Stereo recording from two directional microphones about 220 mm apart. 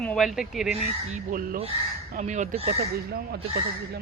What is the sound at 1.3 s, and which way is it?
Speech, 40° right (ahead or behind).